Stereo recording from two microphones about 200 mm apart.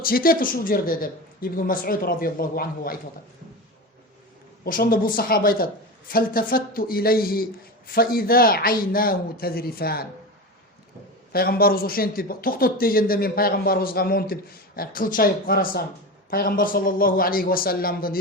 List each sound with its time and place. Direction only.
0.0 s speech: 45° left (ahead or behind)
4.6 s speech: 50° left (ahead or behind)
11.3 s speech: 50° left (ahead or behind)